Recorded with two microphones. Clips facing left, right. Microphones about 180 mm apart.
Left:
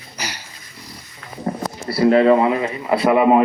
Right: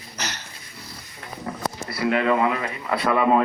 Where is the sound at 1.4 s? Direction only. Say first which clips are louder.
Left 5 dB; 35° left (ahead or behind).